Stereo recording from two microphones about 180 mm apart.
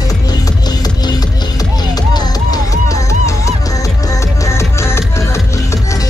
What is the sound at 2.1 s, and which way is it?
Music, 20° left (ahead or behind).